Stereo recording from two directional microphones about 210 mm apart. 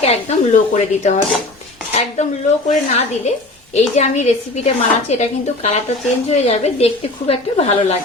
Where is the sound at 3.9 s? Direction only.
30° left (ahead or behind).